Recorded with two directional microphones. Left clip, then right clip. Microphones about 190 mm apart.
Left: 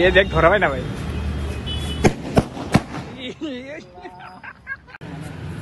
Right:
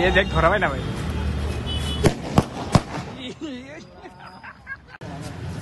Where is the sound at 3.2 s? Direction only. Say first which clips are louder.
Left 4 dB; 10° right (ahead or behind).